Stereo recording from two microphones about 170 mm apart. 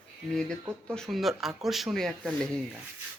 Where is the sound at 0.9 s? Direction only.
Centre (ahead or behind).